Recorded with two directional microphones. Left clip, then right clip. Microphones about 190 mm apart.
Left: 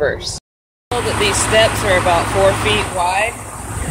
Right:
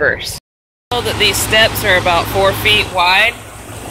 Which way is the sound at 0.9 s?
Centre (ahead or behind).